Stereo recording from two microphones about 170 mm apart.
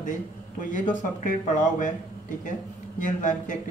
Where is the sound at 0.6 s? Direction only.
50° left (ahead or behind).